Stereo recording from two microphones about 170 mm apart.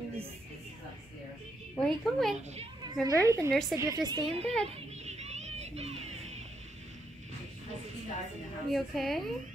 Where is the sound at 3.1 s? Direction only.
20° right (ahead or behind).